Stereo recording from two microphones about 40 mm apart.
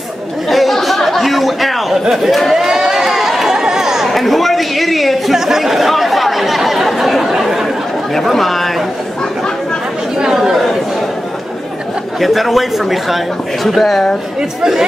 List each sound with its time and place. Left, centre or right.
0.5 s a sound: centre
2.5 s chatter: centre
4.1 s chatter: centre
8.1 s chatter: centre
10.1 s chatter: centre
12.2 s a man's voice: centre